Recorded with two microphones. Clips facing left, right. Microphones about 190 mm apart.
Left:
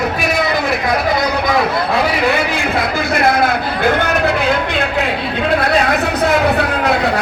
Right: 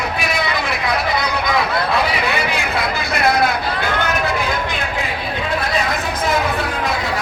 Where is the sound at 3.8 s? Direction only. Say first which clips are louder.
Left 8 dB; 65° left (ahead or behind).